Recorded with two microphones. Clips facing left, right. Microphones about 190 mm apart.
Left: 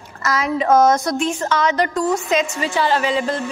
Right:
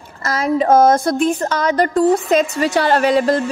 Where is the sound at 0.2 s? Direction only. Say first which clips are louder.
Right 3 dB; 30° right (ahead or behind).